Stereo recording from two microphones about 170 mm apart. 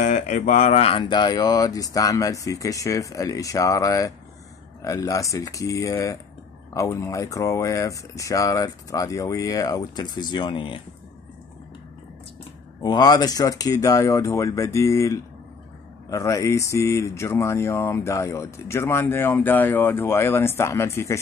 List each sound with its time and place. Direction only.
0.0 s speech: 45° left (ahead or behind); by 10.8 s 30° left (ahead or behind)
12.8 s speech: 25° left (ahead or behind)